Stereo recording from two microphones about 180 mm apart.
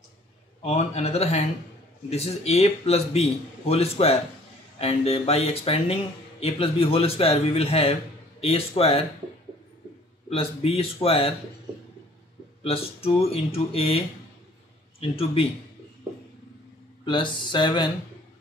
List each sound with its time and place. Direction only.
0.6 s speech: 35° left (ahead or behind)
10.3 s speech: 30° left (ahead or behind)
12.6 s speech: 35° left (ahead or behind)
17.0 s speech: 25° left (ahead or behind)